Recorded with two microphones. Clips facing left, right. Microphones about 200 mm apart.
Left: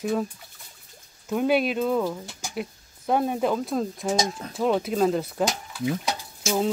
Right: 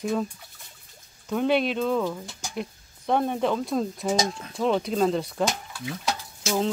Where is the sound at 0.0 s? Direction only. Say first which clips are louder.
Left 1 dB; 5° left (ahead or behind).